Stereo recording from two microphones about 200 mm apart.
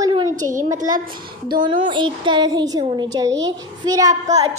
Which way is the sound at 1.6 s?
25° right (ahead or behind).